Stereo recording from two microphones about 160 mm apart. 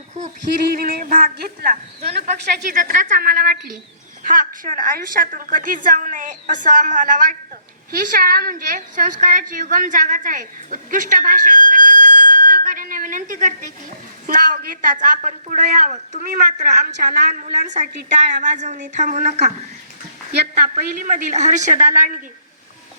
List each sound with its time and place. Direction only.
0.8 s a woman's voice: 60° right (ahead or behind)
7.9 s a woman's voice: 70° right (ahead or behind); by 19.5 s 45° right (ahead or behind)
20.7 s speech: 55° right (ahead or behind)